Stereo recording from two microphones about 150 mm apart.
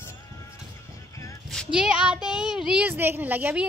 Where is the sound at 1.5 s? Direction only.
Centre (ahead or behind).